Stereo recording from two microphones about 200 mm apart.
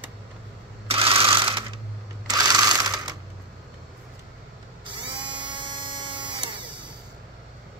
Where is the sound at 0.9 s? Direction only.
25° right (ahead or behind).